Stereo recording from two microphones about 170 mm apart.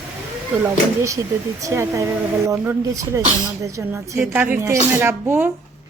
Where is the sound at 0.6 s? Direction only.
15° right (ahead or behind).